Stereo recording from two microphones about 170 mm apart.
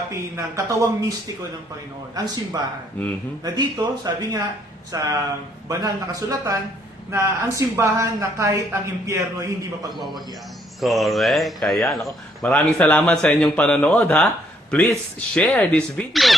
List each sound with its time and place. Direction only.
0.3 s speech: 15° right (ahead or behind)
2.1 s speech: 20° right (ahead or behind)
10.8 s speech: centre (ahead or behind)